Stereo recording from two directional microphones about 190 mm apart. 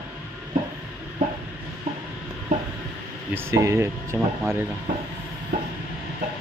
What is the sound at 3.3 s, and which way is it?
Speech, 15° right (ahead or behind).